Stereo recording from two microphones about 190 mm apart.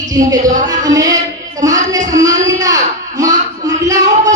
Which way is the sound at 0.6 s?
20° right (ahead or behind).